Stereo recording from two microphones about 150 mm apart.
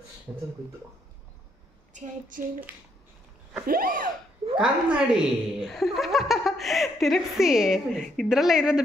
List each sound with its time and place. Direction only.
0.3 s speech: 15° right (ahead or behind)
2.3 s a sound: 60° right (ahead or behind)
3.6 s speech: 75° right (ahead or behind)
4.6 s speech: 5° right (ahead or behind)